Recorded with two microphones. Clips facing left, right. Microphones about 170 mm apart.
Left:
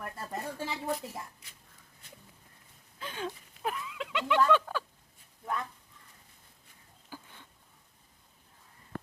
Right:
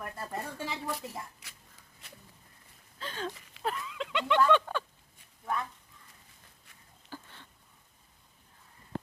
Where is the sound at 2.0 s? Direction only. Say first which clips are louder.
Right 1 dB; 80° right.